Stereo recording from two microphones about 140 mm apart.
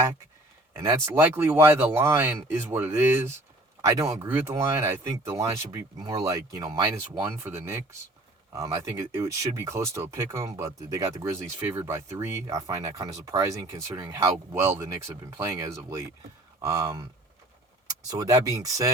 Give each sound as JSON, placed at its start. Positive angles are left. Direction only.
{"t": 0.8, "sound": "speech", "side_deg": -20}
{"t": 18.1, "sound": "speech", "side_deg": -25}